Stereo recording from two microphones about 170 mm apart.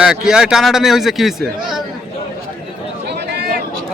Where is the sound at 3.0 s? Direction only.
80° right.